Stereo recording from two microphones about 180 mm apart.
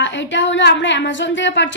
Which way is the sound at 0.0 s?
90° left.